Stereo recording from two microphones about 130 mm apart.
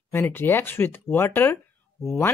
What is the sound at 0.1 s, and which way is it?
A woman's voice, 15° left (ahead or behind).